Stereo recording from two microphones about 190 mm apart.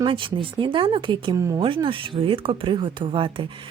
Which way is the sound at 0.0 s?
25° right (ahead or behind).